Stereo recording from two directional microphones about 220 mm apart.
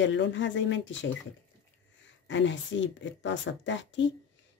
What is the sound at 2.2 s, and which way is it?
Speech, 55° left (ahead or behind).